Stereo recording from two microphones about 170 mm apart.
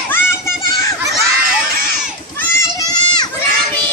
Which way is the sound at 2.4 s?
15° left (ahead or behind).